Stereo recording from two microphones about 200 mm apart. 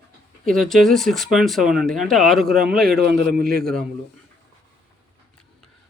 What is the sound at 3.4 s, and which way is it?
Speech, 50° right (ahead or behind).